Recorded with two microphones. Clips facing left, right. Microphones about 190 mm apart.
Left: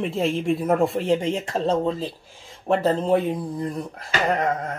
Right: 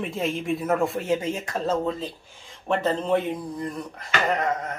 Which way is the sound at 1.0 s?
30° left (ahead or behind).